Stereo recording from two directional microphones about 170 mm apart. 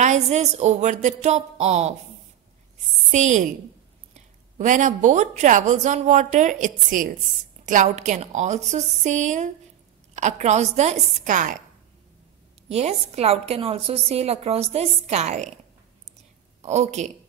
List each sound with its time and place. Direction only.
0.0 s a woman's voice: 45° right (ahead or behind)
3.1 s a woman's voice: 45° right (ahead or behind)
12.6 s a woman's voice: 40° right (ahead or behind)
16.6 s a woman's voice: 40° right (ahead or behind)